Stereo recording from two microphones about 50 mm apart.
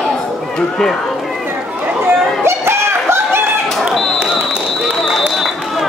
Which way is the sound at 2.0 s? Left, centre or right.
Right.